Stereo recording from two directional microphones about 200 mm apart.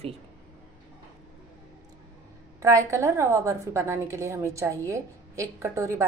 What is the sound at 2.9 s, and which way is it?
A woman's voice, 15° right (ahead or behind).